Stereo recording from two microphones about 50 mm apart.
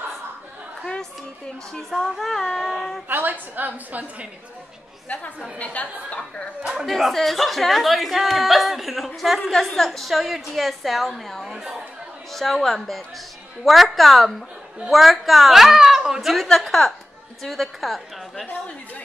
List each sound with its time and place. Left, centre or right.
1.7 s speech: centre
3.1 s a woman's voice: right
5.0 s a woman's voice: left
6.9 s a woman's voice: centre